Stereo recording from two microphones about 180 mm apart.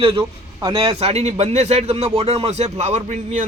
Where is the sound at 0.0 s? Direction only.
30° right (ahead or behind).